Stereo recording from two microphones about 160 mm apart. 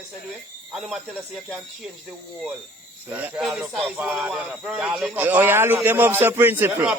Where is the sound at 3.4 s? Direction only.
Centre (ahead or behind).